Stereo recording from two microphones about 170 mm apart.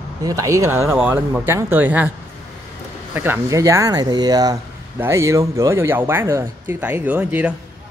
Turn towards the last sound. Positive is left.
turn(degrees=-10)  # may be behind; listen again after turning